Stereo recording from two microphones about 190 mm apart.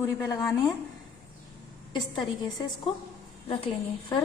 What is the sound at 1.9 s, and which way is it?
Speech, 25° left (ahead or behind).